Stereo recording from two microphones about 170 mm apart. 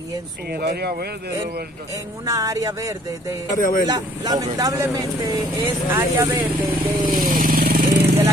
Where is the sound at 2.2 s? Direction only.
20° right (ahead or behind).